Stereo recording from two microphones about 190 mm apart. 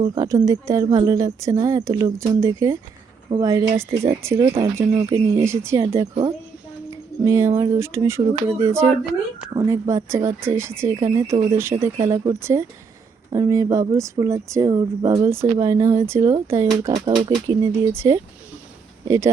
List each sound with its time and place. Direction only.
0.0 s speech: 20° right (ahead or behind)
7.3 s speech: 15° right (ahead or behind)